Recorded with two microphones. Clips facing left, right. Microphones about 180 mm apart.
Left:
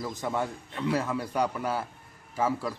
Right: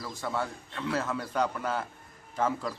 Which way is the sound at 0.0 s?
20° left (ahead or behind).